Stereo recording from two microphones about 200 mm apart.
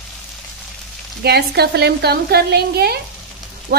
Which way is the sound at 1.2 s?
55° right (ahead or behind).